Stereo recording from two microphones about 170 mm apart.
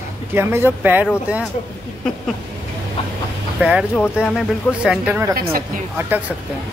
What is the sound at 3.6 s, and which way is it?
Speech, 5° right (ahead or behind).